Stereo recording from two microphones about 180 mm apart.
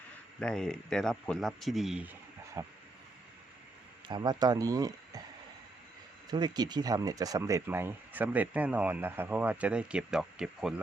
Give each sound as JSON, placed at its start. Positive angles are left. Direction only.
{"t": 0.3, "sound": "a man's voice", "side_deg": 5}
{"t": 2.6, "sound": "speech", "side_deg": -20}
{"t": 4.1, "sound": "speech", "side_deg": -25}
{"t": 6.3, "sound": "speech", "side_deg": -25}